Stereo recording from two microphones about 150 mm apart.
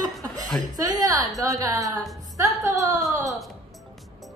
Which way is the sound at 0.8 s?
25° right (ahead or behind).